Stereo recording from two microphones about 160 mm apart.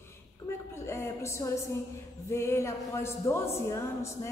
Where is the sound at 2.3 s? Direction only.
15° left (ahead or behind).